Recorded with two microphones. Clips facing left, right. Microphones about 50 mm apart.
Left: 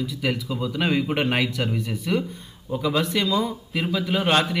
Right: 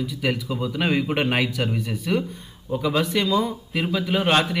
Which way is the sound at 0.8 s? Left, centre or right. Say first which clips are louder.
Even; centre.